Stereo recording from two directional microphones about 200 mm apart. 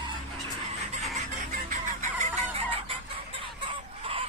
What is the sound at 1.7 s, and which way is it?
Fowl, 40° right (ahead or behind).